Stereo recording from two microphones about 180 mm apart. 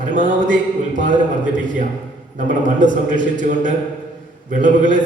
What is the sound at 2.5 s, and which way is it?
A man's voice, 45° right (ahead or behind).